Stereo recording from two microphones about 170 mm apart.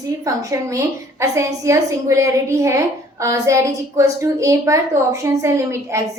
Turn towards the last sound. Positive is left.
turn(degrees=-15)  # may be behind; listen again after turning